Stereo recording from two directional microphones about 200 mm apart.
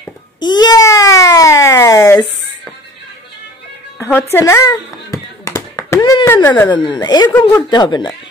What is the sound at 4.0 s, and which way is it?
Speech, 10° left (ahead or behind).